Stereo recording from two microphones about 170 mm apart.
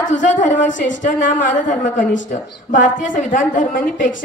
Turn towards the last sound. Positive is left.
turn(degrees=50)  # may be behind; listen again after turning